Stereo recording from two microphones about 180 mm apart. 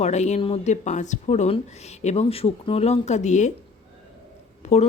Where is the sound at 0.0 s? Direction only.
40° left (ahead or behind).